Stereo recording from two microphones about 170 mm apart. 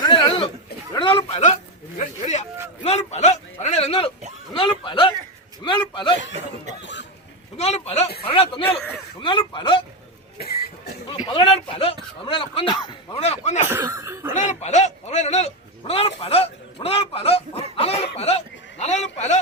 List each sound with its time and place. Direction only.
0.0 s a sound: 30° left (ahead or behind)
2.0 s a man's voice: 45° left (ahead or behind); by 6.1 s 30° left (ahead or behind)
7.5 s a man's voice: 40° left (ahead or behind)
11.3 s a man's voice: 30° left (ahead or behind)
13.7 s cough: 15° right (ahead or behind)
14.3 s a man's voice: 45° left (ahead or behind)